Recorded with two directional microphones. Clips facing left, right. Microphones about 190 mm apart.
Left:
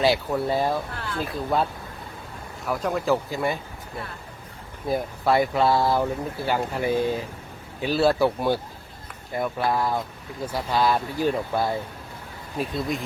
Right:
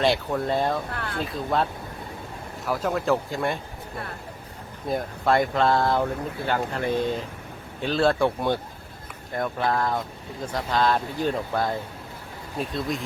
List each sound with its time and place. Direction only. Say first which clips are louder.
0.0 s speech: left 1 dB; 5° left (ahead or behind)
0.9 s speech: even; 60° right (ahead or behind)
1.2 s speech: left 1 dB; centre (ahead or behind)
2.6 s speech: even; centre (ahead or behind)
4.9 s speech: left 1 dB; 5° left (ahead or behind)